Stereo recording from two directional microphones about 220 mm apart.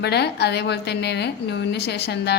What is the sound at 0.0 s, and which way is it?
A woman's voice, 50° left (ahead or behind).